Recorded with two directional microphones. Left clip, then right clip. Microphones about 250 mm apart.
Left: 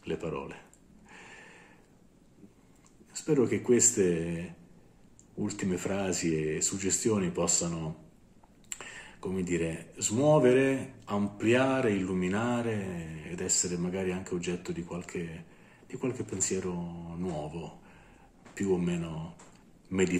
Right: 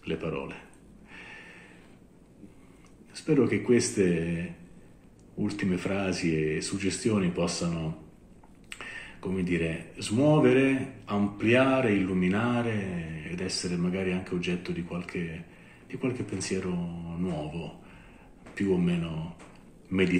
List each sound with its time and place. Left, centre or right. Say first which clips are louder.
0.0 s speech: right 2 dB; centre
3.2 s speech: right 2 dB; centre
8.7 s a sound: right 5 dB; centre
9.5 s speech: right 2 dB; centre
18.6 s speech: right 2 dB; centre